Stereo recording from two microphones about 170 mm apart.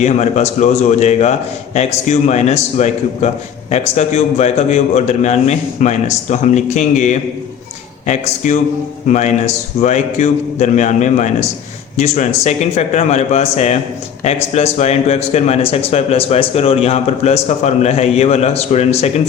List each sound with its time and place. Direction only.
0.0 s a man's voice: 40° left (ahead or behind)